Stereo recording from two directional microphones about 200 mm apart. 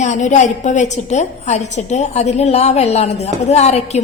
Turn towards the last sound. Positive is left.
turn(degrees=35)  # may be behind; listen again after turning